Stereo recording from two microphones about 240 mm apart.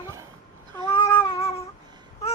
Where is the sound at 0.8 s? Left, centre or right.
Left.